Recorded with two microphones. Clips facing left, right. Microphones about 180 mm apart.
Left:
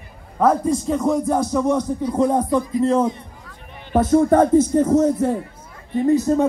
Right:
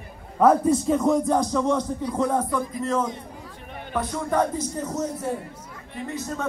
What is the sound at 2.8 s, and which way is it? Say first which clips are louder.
Speech: left 7 dB; 30° left (ahead or behind).